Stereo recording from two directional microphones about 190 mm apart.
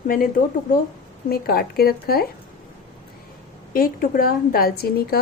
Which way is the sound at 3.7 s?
50° left (ahead or behind).